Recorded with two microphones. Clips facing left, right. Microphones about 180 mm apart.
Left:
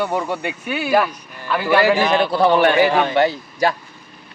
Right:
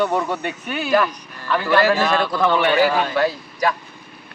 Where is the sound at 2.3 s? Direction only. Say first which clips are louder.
Left 4 dB; 35° left (ahead or behind).